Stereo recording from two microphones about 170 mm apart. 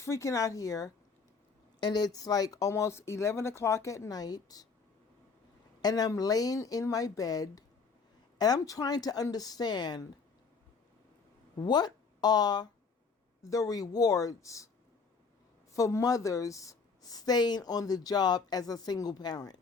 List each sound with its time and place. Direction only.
0.0 s a woman's voice: 15° left (ahead or behind)
5.8 s a woman's voice: 20° left (ahead or behind)
11.6 s a woman's voice: 25° left (ahead or behind)
15.7 s a woman's voice: 20° left (ahead or behind)